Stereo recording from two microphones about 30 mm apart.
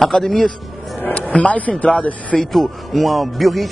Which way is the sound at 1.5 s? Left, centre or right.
Left.